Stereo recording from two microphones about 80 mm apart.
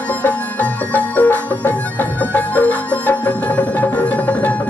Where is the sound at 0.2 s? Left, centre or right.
Left.